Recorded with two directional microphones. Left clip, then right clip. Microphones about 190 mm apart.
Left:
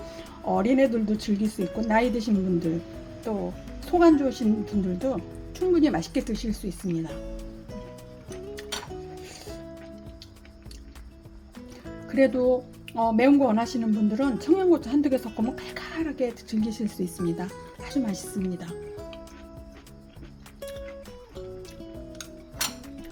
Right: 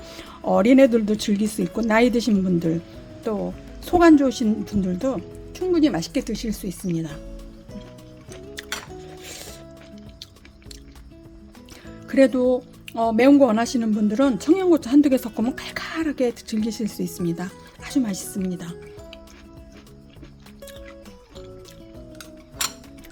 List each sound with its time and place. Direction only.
0.0 s speech: 40° right (ahead or behind)
9.2 s music: 45° right (ahead or behind)
12.0 s speech: 35° right (ahead or behind)